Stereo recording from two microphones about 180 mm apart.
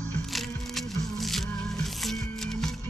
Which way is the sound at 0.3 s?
Centre (ahead or behind).